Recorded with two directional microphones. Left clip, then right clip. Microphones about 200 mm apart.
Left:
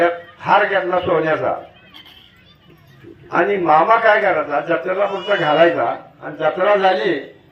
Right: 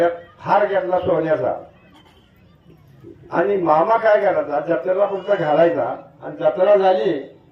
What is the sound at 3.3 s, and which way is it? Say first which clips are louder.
A man's voice: left 2 dB; 25° right (ahead or behind).